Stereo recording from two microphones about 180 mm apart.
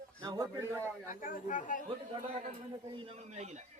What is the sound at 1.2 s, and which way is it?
Speech, 45° left (ahead or behind).